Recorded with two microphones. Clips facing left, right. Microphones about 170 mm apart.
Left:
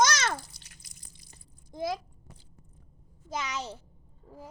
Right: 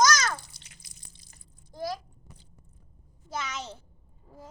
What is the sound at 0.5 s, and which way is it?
Drip, 25° right (ahead or behind).